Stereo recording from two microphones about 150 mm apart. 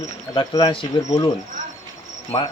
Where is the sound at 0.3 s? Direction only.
35° left (ahead or behind).